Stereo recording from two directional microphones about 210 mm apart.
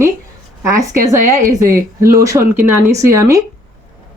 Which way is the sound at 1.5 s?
15° right (ahead or behind).